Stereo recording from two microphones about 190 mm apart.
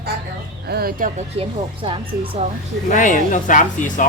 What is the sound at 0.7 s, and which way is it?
Speech, 50° right (ahead or behind).